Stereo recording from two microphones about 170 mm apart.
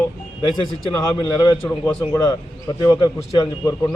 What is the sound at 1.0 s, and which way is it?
A man's voice, 15° left (ahead or behind).